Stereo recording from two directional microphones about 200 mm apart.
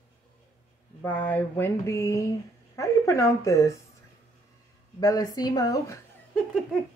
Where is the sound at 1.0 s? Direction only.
10° left (ahead or behind).